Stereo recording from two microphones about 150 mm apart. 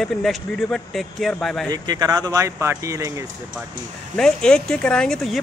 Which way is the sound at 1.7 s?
25° right (ahead or behind).